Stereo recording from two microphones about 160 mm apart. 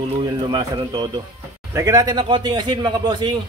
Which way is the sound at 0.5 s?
25° right (ahead or behind).